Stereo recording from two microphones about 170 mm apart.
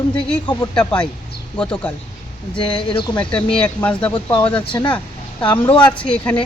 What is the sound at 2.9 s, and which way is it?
Speech, 30° left (ahead or behind).